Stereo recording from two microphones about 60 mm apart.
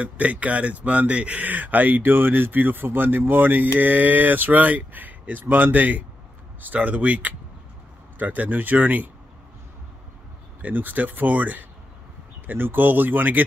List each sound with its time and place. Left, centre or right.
0.0 s speech: right
10.6 s speech: right